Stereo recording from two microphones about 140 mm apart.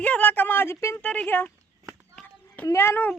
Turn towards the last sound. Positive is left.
turn(degrees=15)  # may be behind; listen again after turning